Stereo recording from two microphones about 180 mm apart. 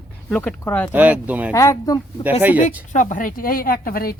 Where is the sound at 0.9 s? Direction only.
10° right (ahead or behind).